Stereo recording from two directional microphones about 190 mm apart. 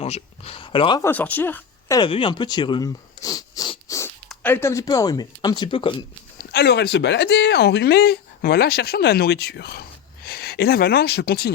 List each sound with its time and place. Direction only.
0.0 s speech: 30° left (ahead or behind)
1.0 s a woman's voice: 10° left (ahead or behind)
2.0 s speech: 25° left (ahead or behind)
6.4 s speech: 55° left (ahead or behind)